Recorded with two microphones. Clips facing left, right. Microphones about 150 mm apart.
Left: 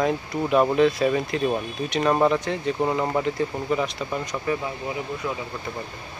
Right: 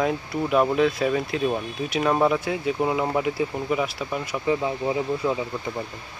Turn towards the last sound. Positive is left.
turn(degrees=-25)  # may be behind; listen again after turning